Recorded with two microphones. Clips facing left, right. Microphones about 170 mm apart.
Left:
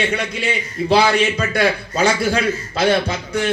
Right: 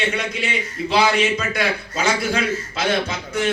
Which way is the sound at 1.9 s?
35° left (ahead or behind).